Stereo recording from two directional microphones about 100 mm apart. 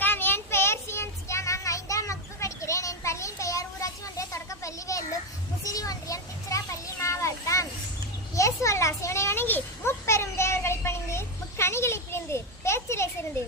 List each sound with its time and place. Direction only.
0.0 s child singing: 20° left (ahead or behind)
5.6 s children playing: 35° left (ahead or behind)
8.4 s a sound: 30° left (ahead or behind)